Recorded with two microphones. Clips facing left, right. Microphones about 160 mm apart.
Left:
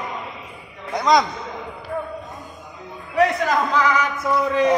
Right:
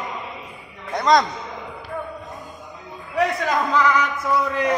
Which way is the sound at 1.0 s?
Centre (ahead or behind).